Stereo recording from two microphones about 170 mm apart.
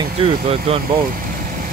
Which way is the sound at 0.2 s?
35° right (ahead or behind).